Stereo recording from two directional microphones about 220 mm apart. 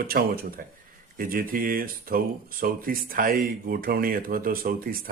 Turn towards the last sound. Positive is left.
turn(degrees=-40)  # may be behind; listen again after turning